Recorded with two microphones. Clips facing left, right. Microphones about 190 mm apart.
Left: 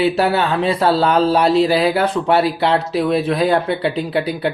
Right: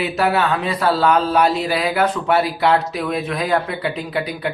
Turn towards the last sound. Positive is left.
turn(degrees=30)  # may be behind; listen again after turning